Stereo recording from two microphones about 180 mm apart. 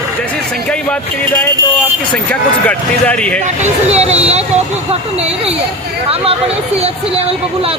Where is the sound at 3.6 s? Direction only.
35° right (ahead or behind).